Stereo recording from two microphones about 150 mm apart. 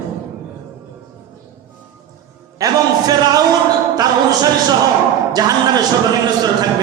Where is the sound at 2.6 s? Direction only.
25° right (ahead or behind).